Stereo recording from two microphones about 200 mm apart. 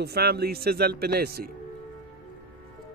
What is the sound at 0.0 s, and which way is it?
Speech, 55° right (ahead or behind).